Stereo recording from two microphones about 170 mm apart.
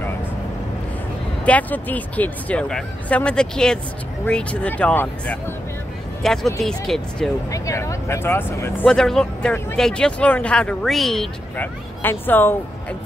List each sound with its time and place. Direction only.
1.4 s speech: 10° left (ahead or behind)
7.5 s speech: 20° left (ahead or behind)
8.8 s speech: 5° left (ahead or behind)